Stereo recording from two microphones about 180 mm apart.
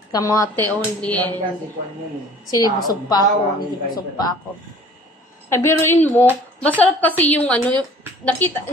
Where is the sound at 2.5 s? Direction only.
20° left (ahead or behind).